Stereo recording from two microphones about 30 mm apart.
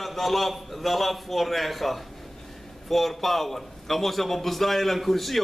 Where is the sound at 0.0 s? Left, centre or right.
Centre.